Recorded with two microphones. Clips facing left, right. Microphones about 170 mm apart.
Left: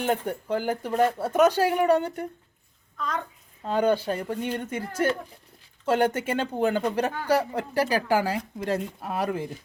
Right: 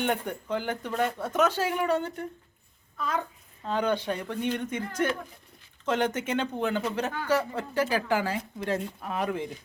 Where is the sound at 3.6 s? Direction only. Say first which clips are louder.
Left 3 dB; 40° left (ahead or behind).